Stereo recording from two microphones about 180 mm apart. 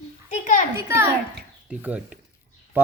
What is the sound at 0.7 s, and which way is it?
Speech, 15° right (ahead or behind).